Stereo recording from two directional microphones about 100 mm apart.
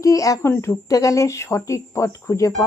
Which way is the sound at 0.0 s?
35° left (ahead or behind).